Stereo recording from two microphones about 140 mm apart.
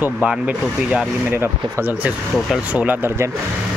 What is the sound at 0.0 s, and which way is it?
Speech, 10° right (ahead or behind).